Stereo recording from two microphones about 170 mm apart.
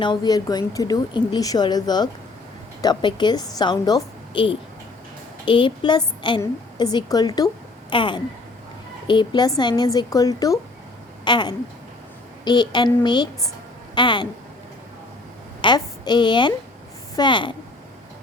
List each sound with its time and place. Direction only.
0.0 s a woman's voice: 25° left (ahead or behind)
15.6 s a woman's voice: 25° left (ahead or behind)